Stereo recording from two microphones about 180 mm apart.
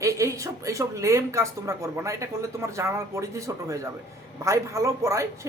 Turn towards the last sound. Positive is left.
turn(degrees=-15)  # may be behind; listen again after turning